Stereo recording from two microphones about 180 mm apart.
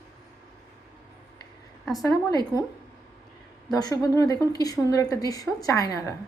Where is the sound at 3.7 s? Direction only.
20° left (ahead or behind).